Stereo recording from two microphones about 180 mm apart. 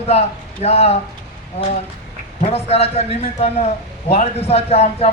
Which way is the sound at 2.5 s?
35° left (ahead or behind).